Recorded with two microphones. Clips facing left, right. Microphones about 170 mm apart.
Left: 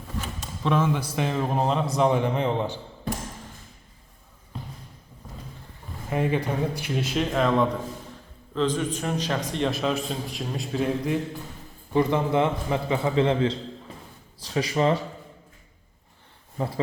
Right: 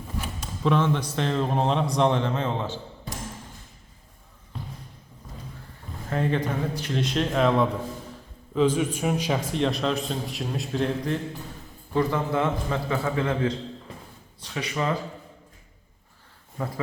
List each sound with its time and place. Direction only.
0.6 s a man's voice: 5° left (ahead or behind)
6.1 s a man's voice: 10° left (ahead or behind)
11.9 s a man's voice: 20° left (ahead or behind)
14.4 s speech: 35° left (ahead or behind)
16.6 s a man's voice: 25° left (ahead or behind)